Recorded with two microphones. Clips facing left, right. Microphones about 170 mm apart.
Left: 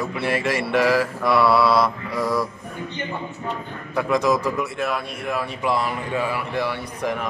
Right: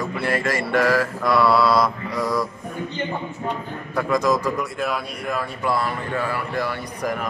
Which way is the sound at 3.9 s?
10° left (ahead or behind).